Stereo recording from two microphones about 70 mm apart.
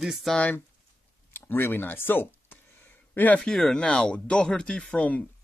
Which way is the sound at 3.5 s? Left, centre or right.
Centre.